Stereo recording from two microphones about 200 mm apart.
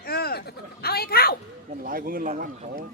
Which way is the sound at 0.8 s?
50° left (ahead or behind).